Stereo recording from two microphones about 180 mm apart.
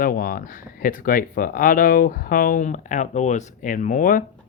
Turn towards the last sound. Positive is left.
turn(degrees=50)  # may be behind; listen again after turning